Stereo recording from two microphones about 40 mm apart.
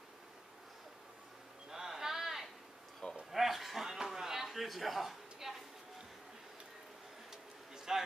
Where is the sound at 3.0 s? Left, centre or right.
Left.